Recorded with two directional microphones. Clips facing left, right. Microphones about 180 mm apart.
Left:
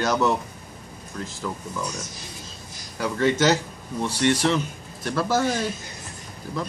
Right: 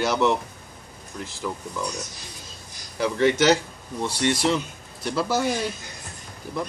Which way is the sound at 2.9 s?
15° right (ahead or behind).